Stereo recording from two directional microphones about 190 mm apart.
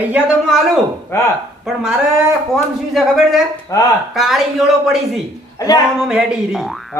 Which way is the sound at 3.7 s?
15° left (ahead or behind).